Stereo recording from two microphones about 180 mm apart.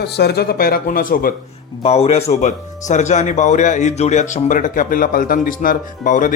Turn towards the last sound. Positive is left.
turn(degrees=45)  # may be behind; listen again after turning